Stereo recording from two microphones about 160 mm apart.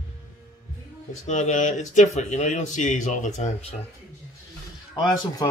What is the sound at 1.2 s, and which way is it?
Speech, 50° left (ahead or behind).